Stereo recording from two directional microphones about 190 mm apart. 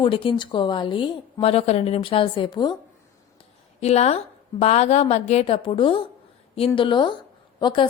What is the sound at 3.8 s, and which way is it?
A woman's voice, 35° left (ahead or behind).